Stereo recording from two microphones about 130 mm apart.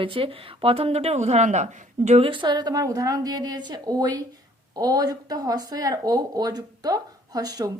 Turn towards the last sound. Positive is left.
turn(degrees=-30)  # may be behind; listen again after turning